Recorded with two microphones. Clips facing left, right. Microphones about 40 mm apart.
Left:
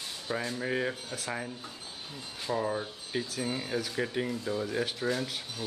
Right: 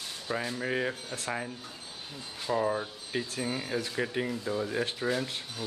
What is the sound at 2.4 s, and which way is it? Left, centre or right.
Speech, centre.